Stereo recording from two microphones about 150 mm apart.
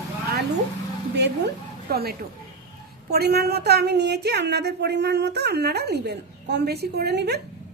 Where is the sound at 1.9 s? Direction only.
90° right.